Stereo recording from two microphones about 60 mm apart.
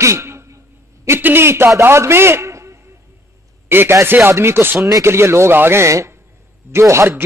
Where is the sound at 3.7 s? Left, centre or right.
Right.